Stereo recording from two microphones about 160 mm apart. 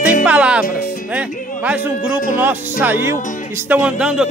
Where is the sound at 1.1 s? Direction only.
10° right (ahead or behind).